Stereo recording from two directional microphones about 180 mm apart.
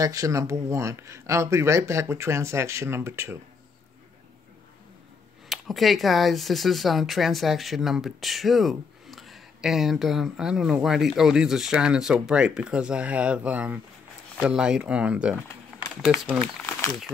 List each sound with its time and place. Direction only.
0.0 s speech: 20° right (ahead or behind)
5.5 s speech: centre (ahead or behind)